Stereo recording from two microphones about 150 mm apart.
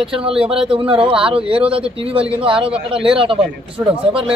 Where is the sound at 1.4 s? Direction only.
5° right (ahead or behind).